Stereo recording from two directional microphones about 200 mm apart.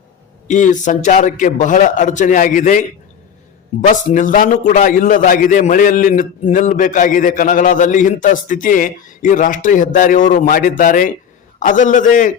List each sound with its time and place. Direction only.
0.4 s a man's voice: 40° left (ahead or behind)